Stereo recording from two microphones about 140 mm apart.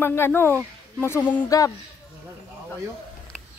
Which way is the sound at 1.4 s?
25° left (ahead or behind).